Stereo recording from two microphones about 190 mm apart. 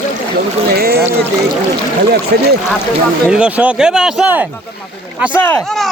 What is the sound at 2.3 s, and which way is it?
Speech, 55° right (ahead or behind).